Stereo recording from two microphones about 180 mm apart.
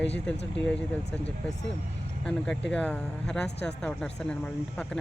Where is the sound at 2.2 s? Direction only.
5° left (ahead or behind).